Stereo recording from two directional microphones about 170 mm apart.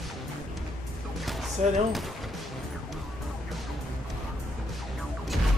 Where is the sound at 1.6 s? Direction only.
45° right (ahead or behind).